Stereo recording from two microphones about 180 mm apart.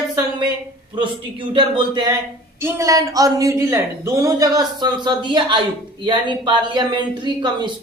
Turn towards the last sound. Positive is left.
turn(degrees=-25)  # may be behind; listen again after turning